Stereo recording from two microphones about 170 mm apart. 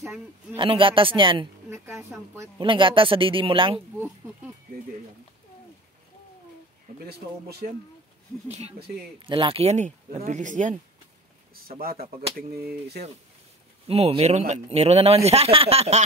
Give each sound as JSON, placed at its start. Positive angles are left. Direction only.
{"t": 0.6, "sound": "speech", "side_deg": -30}
{"t": 1.7, "sound": "a woman's voice", "side_deg": -15}
{"t": 2.6, "sound": "speech", "side_deg": -30}
{"t": 7.1, "sound": "speech", "side_deg": -70}
{"t": 8.5, "sound": "speech", "side_deg": -40}
{"t": 11.5, "sound": "speech", "side_deg": -60}
{"t": 12.6, "sound": "speech", "side_deg": -70}
{"t": 13.8, "sound": "speech", "side_deg": -35}